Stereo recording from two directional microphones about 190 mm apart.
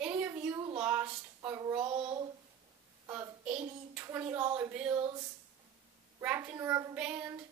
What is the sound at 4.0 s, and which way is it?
A woman's voice, 10° right (ahead or behind).